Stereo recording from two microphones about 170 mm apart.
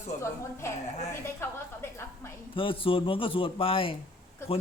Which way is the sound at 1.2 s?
15° left (ahead or behind).